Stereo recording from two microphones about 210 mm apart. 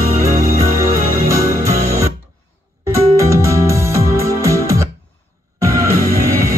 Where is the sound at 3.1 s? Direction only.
15° right (ahead or behind).